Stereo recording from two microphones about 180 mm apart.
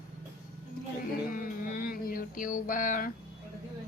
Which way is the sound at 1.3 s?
50° left (ahead or behind).